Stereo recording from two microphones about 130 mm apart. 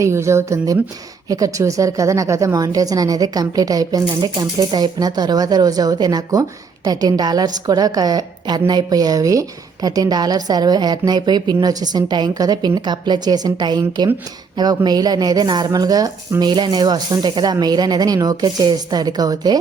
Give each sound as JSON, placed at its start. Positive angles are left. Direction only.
{"t": 0.0, "sound": "a woman's voice", "side_deg": -20}